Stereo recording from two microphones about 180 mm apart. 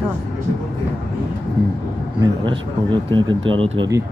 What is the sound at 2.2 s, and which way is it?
Speech, 25° right (ahead or behind).